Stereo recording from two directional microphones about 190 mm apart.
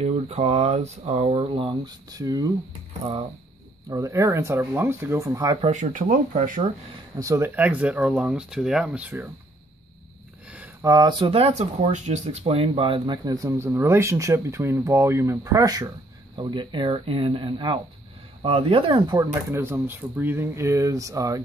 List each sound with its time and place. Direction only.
0.0 s speech: 35° right (ahead or behind); by 2.5 s 20° right (ahead or behind)
3.9 s speech: 15° right (ahead or behind)
5.7 s speech: 40° right (ahead or behind)
7.2 s speech: 15° right (ahead or behind)
10.5 s speech: 10° right (ahead or behind)